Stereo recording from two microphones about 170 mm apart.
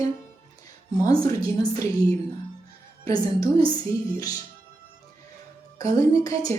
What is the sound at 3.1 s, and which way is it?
Speech, 20° left (ahead or behind).